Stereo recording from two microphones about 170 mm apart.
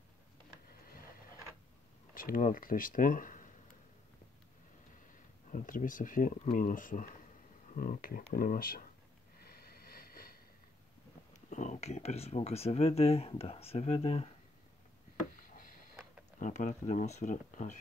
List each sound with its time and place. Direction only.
2.1 s speech: 55° left (ahead or behind)
5.5 s speech: 50° left (ahead or behind)
9.4 s a sound: 60° left (ahead or behind)
11.5 s speech: 45° left (ahead or behind)
15.5 s sniff: 55° left (ahead or behind)
16.3 s speech: 45° left (ahead or behind)